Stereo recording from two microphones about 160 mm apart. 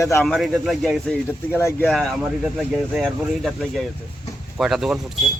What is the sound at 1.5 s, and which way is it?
Speech, 15° left (ahead or behind).